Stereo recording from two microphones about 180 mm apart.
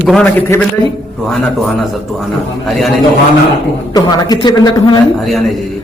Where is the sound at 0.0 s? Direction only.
5° left (ahead or behind).